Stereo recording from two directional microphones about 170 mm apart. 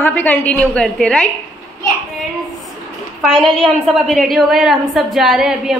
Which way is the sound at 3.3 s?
Centre (ahead or behind).